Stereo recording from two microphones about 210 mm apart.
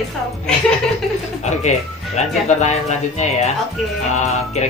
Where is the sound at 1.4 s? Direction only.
35° left (ahead or behind).